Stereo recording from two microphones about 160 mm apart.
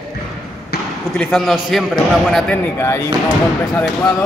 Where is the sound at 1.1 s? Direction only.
Centre (ahead or behind).